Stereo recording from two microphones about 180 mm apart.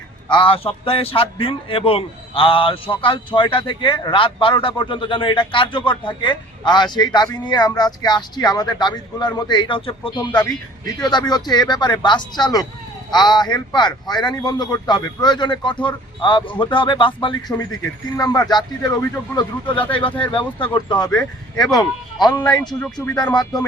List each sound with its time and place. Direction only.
0.3 s a man's voice: 25° left (ahead or behind)
21.2 s speech: 5° left (ahead or behind)
21.7 s a man's voice: 20° left (ahead or behind)
22.8 s speech: 10° left (ahead or behind)
23.3 s a man's voice: 20° left (ahead or behind)